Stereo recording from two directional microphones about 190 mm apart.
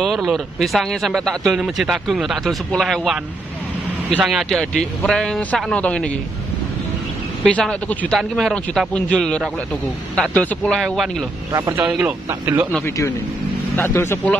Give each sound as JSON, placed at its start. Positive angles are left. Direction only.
{"t": 0.0, "sound": "speech", "side_deg": 0}
{"t": 4.2, "sound": "speech", "side_deg": 0}
{"t": 7.4, "sound": "speech", "side_deg": 5}
{"t": 11.5, "sound": "speech", "side_deg": -15}
{"t": 11.8, "sound": "speech", "side_deg": -5}
{"t": 12.7, "sound": "speech", "side_deg": 15}